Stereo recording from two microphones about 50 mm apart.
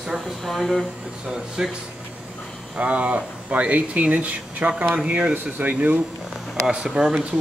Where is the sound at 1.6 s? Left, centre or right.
Centre.